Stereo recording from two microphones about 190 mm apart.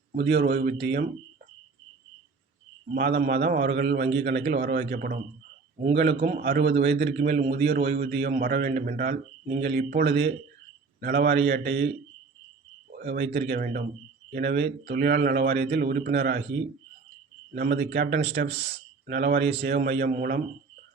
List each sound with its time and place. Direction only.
0.2 s a man's voice: 60° right (ahead or behind)
2.9 s a man's voice: 60° right (ahead or behind)
5.8 s a man's voice: 65° right (ahead or behind)
6.2 s a man's voice: 50° right (ahead or behind)
9.6 s a man's voice: 60° right (ahead or behind)
12.9 s speech: 60° right (ahead or behind)
13.6 s a man's voice: 45° right (ahead or behind)
14.3 s a man's voice: 60° right (ahead or behind)
17.5 s a man's voice: 60° right (ahead or behind)
20.1 s a man's voice: 45° right (ahead or behind)